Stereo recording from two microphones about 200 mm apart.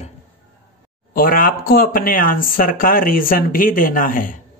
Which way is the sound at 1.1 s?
45° left (ahead or behind).